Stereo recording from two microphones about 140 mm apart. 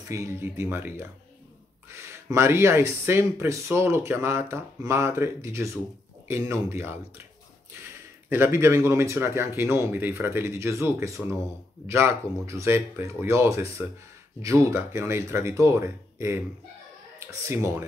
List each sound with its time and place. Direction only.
0.0 s speech: 20° right (ahead or behind)
8.3 s speech: 15° right (ahead or behind)
17.5 s speech: 20° right (ahead or behind)